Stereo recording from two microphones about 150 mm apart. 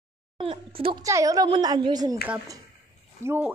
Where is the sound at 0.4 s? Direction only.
40° right (ahead or behind).